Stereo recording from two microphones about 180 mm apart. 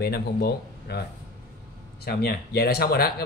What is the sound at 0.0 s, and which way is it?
Speech, 60° left (ahead or behind).